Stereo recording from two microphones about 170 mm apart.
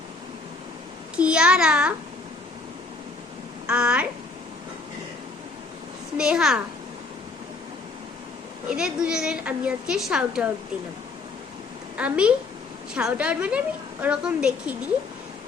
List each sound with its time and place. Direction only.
1.1 s a child's voice: 5° right (ahead or behind)
3.7 s a woman's voice: 5° right (ahead or behind)
6.1 s a woman's voice: 5° right (ahead or behind)
8.7 s a woman's voice: 5° right (ahead or behind)
11.9 s a woman's voice: 5° right (ahead or behind)